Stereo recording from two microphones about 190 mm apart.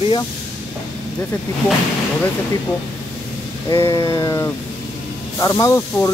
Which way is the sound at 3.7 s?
20° left (ahead or behind).